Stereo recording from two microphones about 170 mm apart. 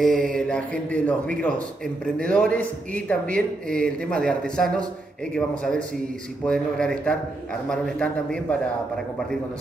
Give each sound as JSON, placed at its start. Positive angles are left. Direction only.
{"t": 0.0, "sound": "a man's voice", "side_deg": 5}